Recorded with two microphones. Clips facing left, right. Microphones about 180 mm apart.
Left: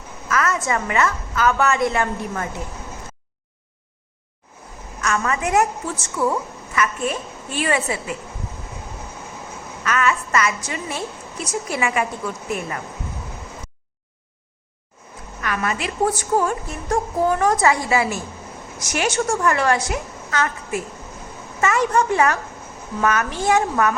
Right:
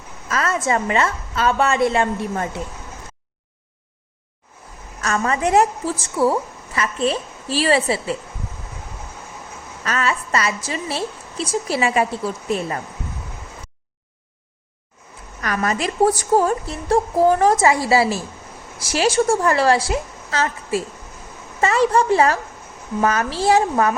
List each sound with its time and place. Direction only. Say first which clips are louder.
0.3 s a woman's voice: right 1 dB; 30° right (ahead or behind)
4.9 s a woman's voice: right 2 dB; 35° right (ahead or behind)
9.8 s a woman's voice: left 1 dB; 35° right (ahead or behind)
15.4 s a woman's voice: right 3 dB; 40° right (ahead or behind)